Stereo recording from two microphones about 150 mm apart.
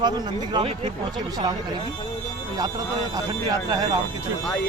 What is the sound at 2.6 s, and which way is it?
Speech, 25° right (ahead or behind).